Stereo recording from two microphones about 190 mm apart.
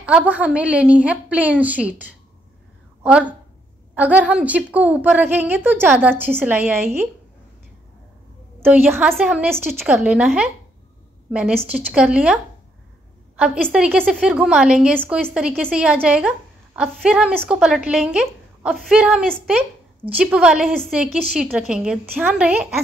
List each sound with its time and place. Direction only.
0.0 s a woman's voice: 5° right (ahead or behind)
8.7 s a woman's voice: 10° right (ahead or behind)
13.7 s a woman's voice: 5° right (ahead or behind)